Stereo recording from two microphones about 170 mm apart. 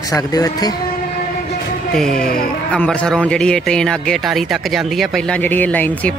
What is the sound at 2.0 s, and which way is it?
A man's voice, 5° left (ahead or behind).